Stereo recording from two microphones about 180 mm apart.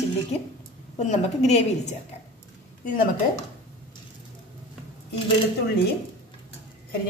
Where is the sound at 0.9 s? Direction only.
40° left (ahead or behind).